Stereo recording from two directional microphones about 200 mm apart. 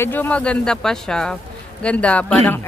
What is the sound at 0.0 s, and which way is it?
A woman's voice, 10° left (ahead or behind).